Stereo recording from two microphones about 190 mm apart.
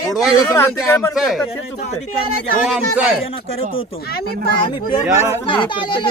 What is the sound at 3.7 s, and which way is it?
Speech, 55° left (ahead or behind).